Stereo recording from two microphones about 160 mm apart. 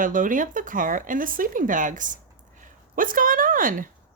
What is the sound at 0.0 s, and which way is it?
A woman's voice, 55° right (ahead or behind).